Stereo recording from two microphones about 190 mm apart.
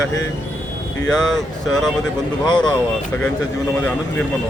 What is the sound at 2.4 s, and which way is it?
Speech, 25° left (ahead or behind).